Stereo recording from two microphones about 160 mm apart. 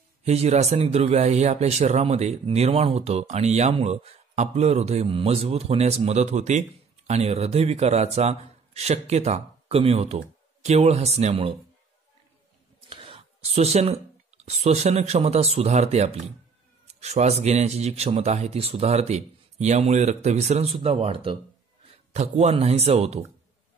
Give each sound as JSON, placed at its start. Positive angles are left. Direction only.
{"t": 0.2, "sound": "speech", "side_deg": -45}
{"t": 12.9, "sound": "a man's voice", "side_deg": -35}